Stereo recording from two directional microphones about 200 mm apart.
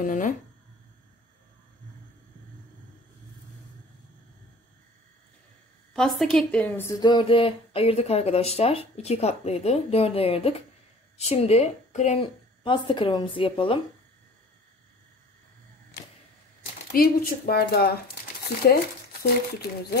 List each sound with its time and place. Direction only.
0.0 s speech: 40° left (ahead or behind)
5.9 s a woman's voice: centre (ahead or behind); by 13.7 s 25° left (ahead or behind)
16.9 s speech: 45° left (ahead or behind)
19.2 s speech: 55° left (ahead or behind)